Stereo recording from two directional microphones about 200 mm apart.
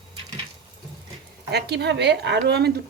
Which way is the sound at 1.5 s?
55° right (ahead or behind).